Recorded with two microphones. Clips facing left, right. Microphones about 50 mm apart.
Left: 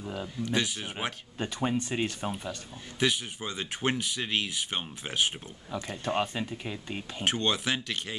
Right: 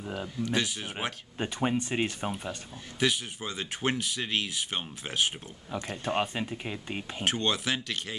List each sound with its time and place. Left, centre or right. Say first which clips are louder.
0.0 s speech: even; centre
0.4 s speech: even; centre
1.4 s speech: right 1 dB; centre
3.0 s speech: even; centre
7.2 s speech: left 1 dB; centre